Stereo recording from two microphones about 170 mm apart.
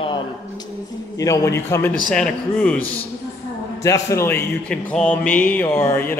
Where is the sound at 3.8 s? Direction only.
20° left (ahead or behind).